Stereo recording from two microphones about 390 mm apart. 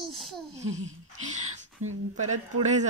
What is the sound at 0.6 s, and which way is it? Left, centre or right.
A woman's voice, centre.